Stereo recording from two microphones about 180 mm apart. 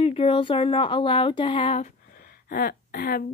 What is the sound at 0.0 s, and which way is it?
Speech, 30° left (ahead or behind).